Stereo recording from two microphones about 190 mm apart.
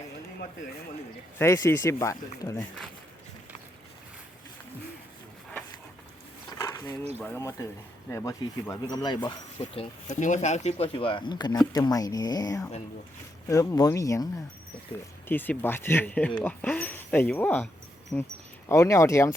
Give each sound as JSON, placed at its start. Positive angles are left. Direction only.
{"t": 1.4, "sound": "speech", "side_deg": 15}
{"t": 6.5, "sound": "a sound", "side_deg": 15}
{"t": 7.2, "sound": "speech", "side_deg": 15}